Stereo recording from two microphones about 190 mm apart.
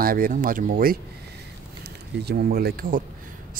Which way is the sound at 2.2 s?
55° right (ahead or behind).